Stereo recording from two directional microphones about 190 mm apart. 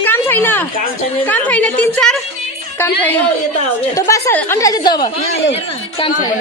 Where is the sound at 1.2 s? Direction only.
10° left (ahead or behind).